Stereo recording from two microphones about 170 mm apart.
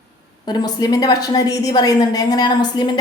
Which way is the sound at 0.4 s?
25° left (ahead or behind).